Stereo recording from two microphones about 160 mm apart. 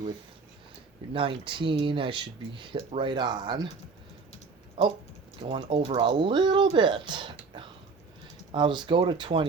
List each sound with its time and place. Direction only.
1.1 s speech: 35° right (ahead or behind)
4.8 s a sound: 30° right (ahead or behind)
5.4 s speech: 35° right (ahead or behind)